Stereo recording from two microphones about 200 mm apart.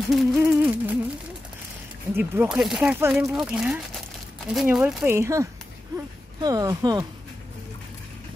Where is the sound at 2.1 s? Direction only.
10° right (ahead or behind).